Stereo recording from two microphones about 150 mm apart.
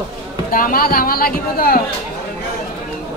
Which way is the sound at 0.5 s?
70° left (ahead or behind).